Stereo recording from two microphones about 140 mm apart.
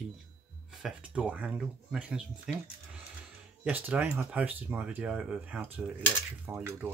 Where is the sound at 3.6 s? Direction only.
10° right (ahead or behind).